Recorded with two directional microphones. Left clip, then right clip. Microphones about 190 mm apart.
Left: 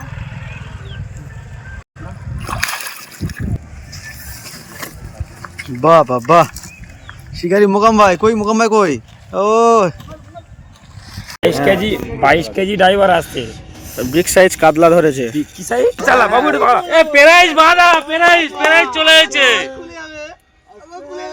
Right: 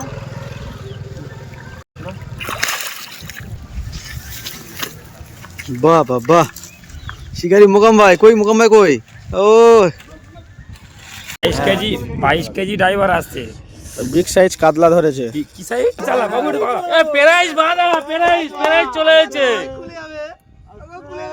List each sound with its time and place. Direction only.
2.5 s splash: centre (ahead or behind)
5.8 s speech: centre (ahead or behind)
11.7 s a man's voice: 35° left (ahead or behind)
13.8 s snake: 25° left (ahead or behind)
14.1 s speech: centre (ahead or behind)
15.7 s speech: 25° left (ahead or behind)
16.9 s a man's voice: 45° left (ahead or behind); by 17.8 s 25° left (ahead or behind)
18.6 s speech: 20° right (ahead or behind)
19.7 s a sound: 30° left (ahead or behind)